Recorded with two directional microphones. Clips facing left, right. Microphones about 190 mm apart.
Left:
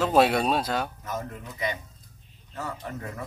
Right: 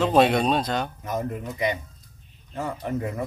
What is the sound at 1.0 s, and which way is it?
Speech, 15° right (ahead or behind).